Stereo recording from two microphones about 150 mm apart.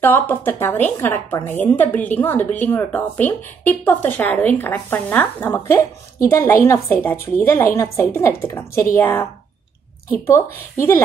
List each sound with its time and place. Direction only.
0.0 s a woman's voice: 15° left (ahead or behind)